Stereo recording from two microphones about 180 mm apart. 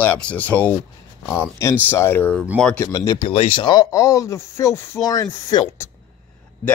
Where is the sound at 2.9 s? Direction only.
20° left (ahead or behind).